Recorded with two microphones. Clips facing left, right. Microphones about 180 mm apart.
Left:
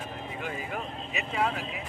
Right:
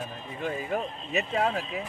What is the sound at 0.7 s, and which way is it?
Speech, 40° right (ahead or behind).